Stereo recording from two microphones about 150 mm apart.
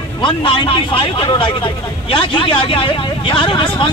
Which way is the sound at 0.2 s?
35° left (ahead or behind).